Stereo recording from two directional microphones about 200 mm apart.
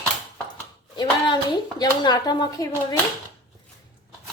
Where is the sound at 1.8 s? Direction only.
20° left (ahead or behind).